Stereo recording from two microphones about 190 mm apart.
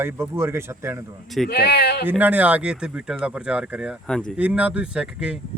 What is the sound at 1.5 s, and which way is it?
Speech, 60° left (ahead or behind).